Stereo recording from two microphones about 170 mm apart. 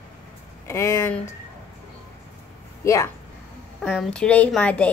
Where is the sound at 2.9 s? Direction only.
20° left (ahead or behind).